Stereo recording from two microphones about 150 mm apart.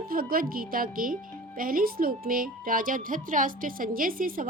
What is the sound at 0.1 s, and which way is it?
Speech, 75° right (ahead or behind).